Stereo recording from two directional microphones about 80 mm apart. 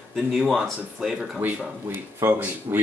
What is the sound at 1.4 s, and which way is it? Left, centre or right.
Speech, right.